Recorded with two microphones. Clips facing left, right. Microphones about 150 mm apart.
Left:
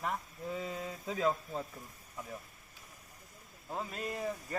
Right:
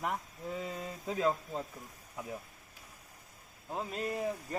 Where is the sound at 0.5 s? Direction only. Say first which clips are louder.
Even; centre (ahead or behind).